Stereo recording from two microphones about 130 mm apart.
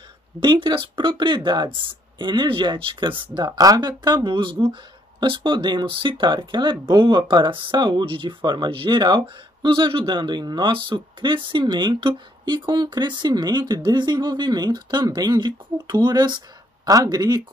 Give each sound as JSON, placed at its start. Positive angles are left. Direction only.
{"t": 0.4, "sound": "speech", "side_deg": -35}